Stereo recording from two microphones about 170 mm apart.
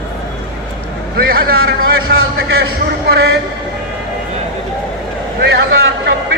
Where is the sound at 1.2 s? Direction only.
60° right (ahead or behind).